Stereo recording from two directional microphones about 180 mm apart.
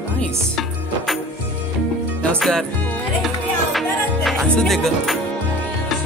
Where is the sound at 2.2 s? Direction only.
5° left (ahead or behind).